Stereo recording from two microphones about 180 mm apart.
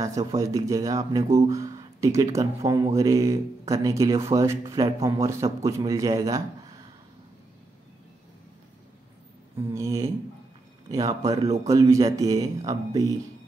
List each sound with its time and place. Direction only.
0.0 s speech: 20° right (ahead or behind)
9.6 s speech: 15° right (ahead or behind)